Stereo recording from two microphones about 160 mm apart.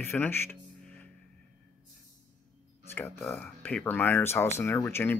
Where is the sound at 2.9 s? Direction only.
10° left (ahead or behind).